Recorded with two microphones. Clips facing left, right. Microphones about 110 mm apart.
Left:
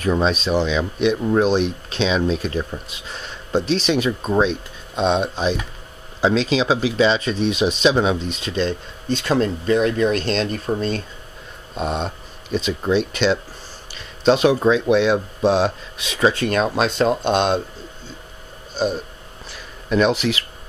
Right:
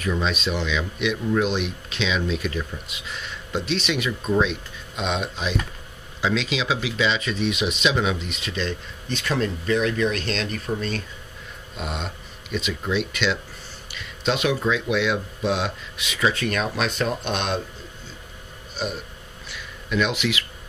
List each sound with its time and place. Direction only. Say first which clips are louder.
0.0 s speech: left 6 dB; 35° left (ahead or behind)
18.8 s speech: left 8 dB; 35° left (ahead or behind)
19.5 s a sound: left 6 dB; 40° left (ahead or behind)